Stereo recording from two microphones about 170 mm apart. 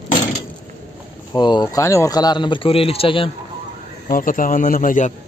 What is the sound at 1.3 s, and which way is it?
Speech, 25° left (ahead or behind).